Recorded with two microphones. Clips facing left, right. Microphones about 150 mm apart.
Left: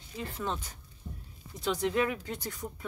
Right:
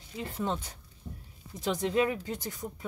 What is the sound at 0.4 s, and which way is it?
Speech, 15° right (ahead or behind).